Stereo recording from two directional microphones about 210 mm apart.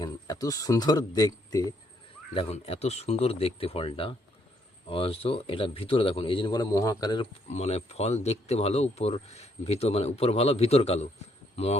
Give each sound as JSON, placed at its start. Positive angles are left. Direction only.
{"t": 0.0, "sound": "speech", "side_deg": 15}
{"t": 2.3, "sound": "a man's voice", "side_deg": 30}
{"t": 7.5, "sound": "speech", "side_deg": 30}